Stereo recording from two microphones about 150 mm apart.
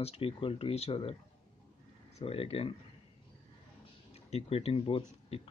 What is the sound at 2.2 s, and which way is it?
Speech, 40° left (ahead or behind).